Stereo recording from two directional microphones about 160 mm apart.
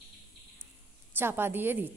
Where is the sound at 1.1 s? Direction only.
15° right (ahead or behind).